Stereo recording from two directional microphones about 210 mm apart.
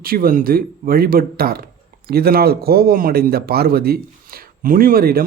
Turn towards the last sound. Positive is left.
turn(degrees=-45)  # may be behind; listen again after turning